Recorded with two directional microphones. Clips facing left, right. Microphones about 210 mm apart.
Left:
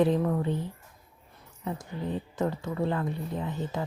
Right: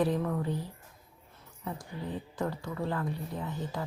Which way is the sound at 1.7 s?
20° left (ahead or behind).